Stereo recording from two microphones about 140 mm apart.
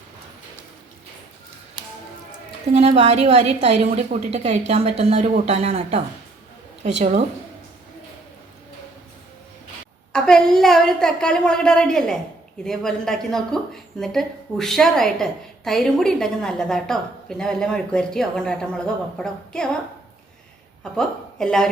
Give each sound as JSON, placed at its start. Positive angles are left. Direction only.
{"t": 2.7, "sound": "a woman's voice", "side_deg": -50}
{"t": 6.8, "sound": "speech", "side_deg": -60}
{"t": 10.1, "sound": "a woman's voice", "side_deg": 5}
{"t": 20.9, "sound": "a woman's voice", "side_deg": 5}